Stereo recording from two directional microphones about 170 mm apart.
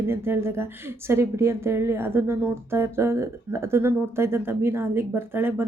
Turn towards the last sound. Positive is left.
turn(degrees=-10)  # may be behind; listen again after turning